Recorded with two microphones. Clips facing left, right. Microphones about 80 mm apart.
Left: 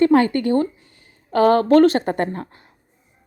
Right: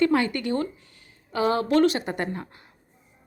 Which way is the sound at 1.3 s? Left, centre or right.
Left.